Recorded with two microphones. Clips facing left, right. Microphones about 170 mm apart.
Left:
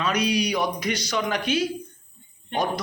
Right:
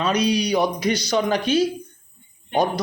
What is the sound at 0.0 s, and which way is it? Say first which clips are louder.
Speech: right 3 dB; 30° right (ahead or behind).